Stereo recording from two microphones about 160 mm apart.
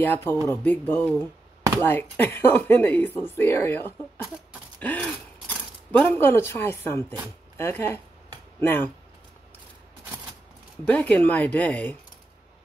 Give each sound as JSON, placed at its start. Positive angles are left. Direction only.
{"t": 0.0, "sound": "speech", "side_deg": 10}
{"t": 10.9, "sound": "speech", "side_deg": 10}